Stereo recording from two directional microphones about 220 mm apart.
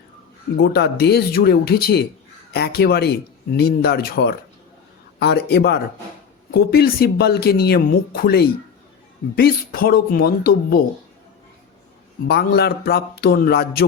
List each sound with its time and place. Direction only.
0.6 s speech: 45° left (ahead or behind)
12.3 s speech: 45° left (ahead or behind)